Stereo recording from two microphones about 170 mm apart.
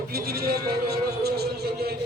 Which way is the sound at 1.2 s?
70° right (ahead or behind).